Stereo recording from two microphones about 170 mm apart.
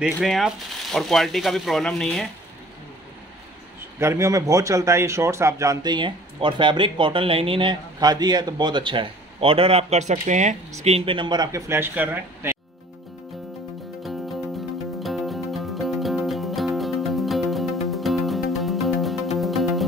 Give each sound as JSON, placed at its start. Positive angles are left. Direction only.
{"t": 0.0, "sound": "speech", "side_deg": 0}
{"t": 4.0, "sound": "speech", "side_deg": -15}
{"t": 15.0, "sound": "music", "side_deg": 0}